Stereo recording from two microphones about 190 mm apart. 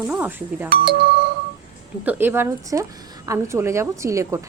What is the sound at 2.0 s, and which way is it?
Speech, 10° right (ahead or behind).